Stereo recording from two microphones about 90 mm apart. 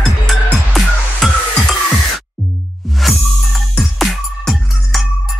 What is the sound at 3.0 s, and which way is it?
Music, centre (ahead or behind).